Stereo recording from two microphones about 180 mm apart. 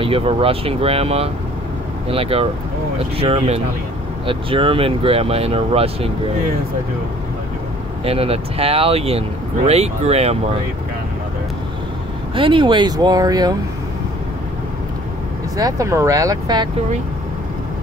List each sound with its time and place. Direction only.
0.0 s speech: 30° right (ahead or behind)
8.0 s speech: 35° right (ahead or behind)
12.4 s speech: 30° right (ahead or behind)
15.5 s speech: 20° right (ahead or behind)